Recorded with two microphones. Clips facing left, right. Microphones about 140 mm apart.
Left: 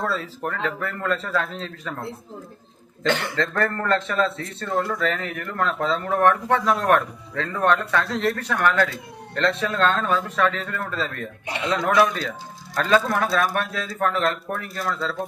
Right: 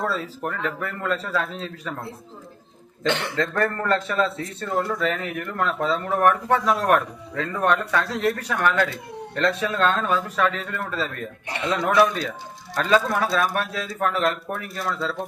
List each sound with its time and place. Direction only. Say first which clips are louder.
0.1 s speech: even; 15° right (ahead or behind)
3.1 s speech: left 1 dB; centre (ahead or behind)
3.3 s speech: even; 15° right (ahead or behind)
11.4 s a man's voice: left 1 dB; 20° left (ahead or behind)
12.8 s speech: even; 5° right (ahead or behind)